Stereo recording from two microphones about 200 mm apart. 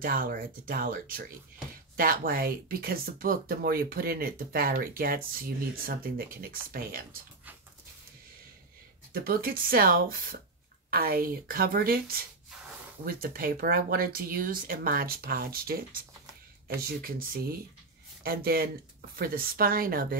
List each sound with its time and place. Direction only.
0.0 s speech: 45° right (ahead or behind)
9.1 s speech: 45° right (ahead or behind)